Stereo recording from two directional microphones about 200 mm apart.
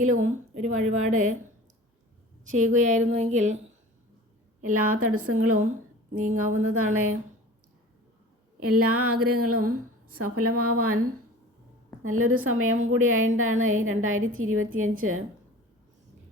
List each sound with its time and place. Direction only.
0.0 s a woman's voice: 40° right (ahead or behind)
2.5 s a woman's voice: 40° right (ahead or behind)
4.6 s a woman's voice: 90° right
8.7 s a woman's voice: 90° right
9.6 s a woman's voice: 45° right (ahead or behind)
10.7 s a woman's voice: 90° right
12.0 s a woman's voice: 90° right